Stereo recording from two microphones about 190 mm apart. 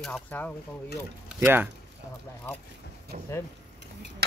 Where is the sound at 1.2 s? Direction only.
10° right (ahead or behind).